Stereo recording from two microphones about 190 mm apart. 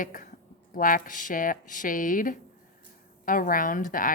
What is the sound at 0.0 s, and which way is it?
Speech, 45° left (ahead or behind).